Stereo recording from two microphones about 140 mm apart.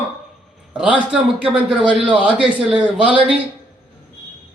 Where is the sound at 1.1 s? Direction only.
5° right (ahead or behind).